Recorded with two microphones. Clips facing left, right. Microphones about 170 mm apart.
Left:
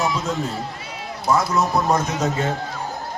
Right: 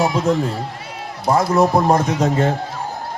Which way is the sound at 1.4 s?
55° right (ahead or behind).